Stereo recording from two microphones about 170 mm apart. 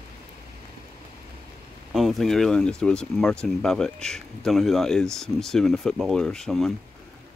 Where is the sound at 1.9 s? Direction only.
Centre (ahead or behind).